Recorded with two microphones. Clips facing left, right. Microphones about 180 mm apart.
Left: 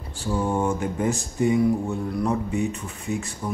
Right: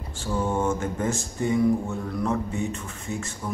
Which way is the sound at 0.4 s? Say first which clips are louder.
Left 1 dB; 15° left (ahead or behind).